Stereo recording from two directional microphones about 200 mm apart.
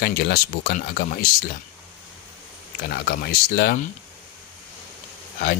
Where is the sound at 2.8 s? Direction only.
50° left (ahead or behind).